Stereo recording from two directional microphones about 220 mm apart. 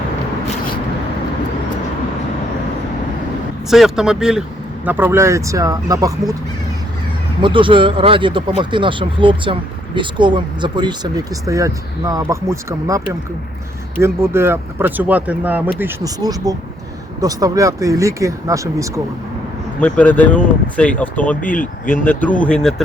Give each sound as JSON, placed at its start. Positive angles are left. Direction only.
{"t": 3.7, "sound": "speech", "side_deg": 0}
{"t": 7.4, "sound": "speech", "side_deg": -20}
{"t": 14.0, "sound": "speech", "side_deg": -10}
{"t": 19.8, "sound": "speech", "side_deg": 5}